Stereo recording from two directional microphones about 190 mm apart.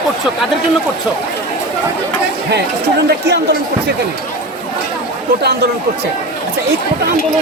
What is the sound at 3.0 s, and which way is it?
Speech, 60° right (ahead or behind).